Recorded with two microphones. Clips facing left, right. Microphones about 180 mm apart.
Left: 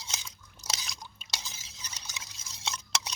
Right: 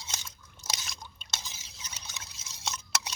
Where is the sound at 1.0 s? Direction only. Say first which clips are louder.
Even; 10° left (ahead or behind).